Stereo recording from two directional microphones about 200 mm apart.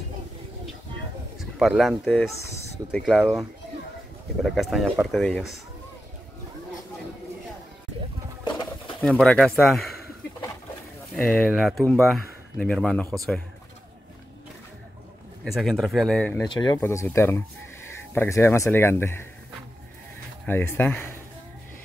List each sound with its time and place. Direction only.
1.4 s speech: centre (ahead or behind)
4.4 s speech: centre (ahead or behind)
8.5 s pigeon: 25° left (ahead or behind)
9.0 s speech: 5° left (ahead or behind)
11.1 s speech: 5° left (ahead or behind)
15.4 s speech: centre (ahead or behind)
16.5 s speech: 20° left (ahead or behind)
20.4 s speech: 10° left (ahead or behind)